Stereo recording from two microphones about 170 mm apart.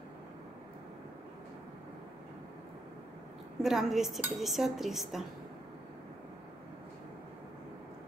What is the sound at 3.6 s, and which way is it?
Speech, centre (ahead or behind).